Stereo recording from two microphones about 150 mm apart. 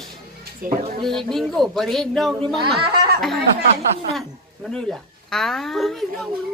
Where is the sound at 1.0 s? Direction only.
Centre (ahead or behind).